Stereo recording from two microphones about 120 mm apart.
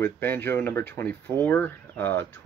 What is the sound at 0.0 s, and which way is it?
Speech, 15° left (ahead or behind).